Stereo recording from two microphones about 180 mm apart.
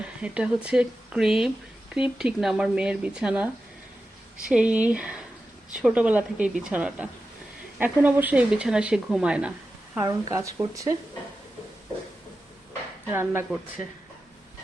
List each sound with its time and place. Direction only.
0.0 s speech: 5° right (ahead or behind)
10.0 s speech: 20° right (ahead or behind)
13.1 s speech: 15° right (ahead or behind)